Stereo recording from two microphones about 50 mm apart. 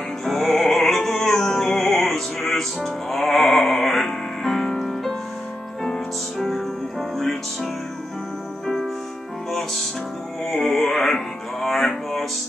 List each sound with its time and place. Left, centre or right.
0.2 s music: centre
6.3 s music: centre
9.5 s music: centre